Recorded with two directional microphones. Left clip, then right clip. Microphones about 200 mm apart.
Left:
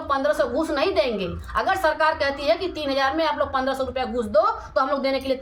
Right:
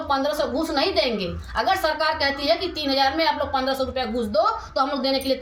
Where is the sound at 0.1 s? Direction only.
5° left (ahead or behind).